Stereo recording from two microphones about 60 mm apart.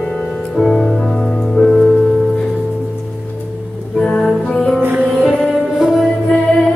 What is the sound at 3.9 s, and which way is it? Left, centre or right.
Music, centre.